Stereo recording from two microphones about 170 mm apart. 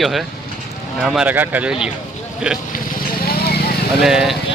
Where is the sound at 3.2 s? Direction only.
65° left (ahead or behind).